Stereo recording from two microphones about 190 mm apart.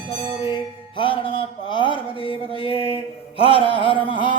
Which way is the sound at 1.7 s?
25° left (ahead or behind).